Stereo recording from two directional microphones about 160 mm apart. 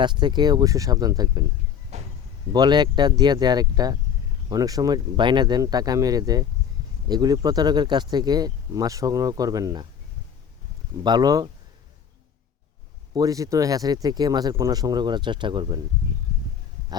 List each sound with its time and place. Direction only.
0.0 s speech: 30° right (ahead or behind)
1.9 s a sound: 40° right (ahead or behind)
2.5 s speech: 25° right (ahead or behind)
11.0 s speech: 25° right (ahead or behind)
13.1 s speech: 20° right (ahead or behind)